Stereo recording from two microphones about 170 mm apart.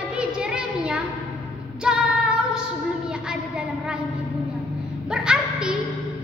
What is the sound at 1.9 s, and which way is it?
Female singing, 5° right (ahead or behind).